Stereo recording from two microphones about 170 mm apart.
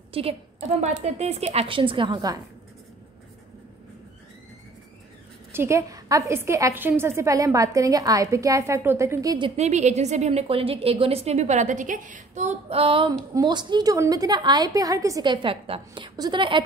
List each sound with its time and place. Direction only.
0.1 s a woman's voice: 35° right (ahead or behind)
5.5 s a woman's voice: 15° right (ahead or behind)
9.6 s a woman's voice: 40° right (ahead or behind)